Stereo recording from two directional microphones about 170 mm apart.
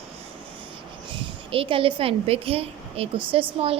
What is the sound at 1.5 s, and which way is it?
A woman's voice, 30° right (ahead or behind).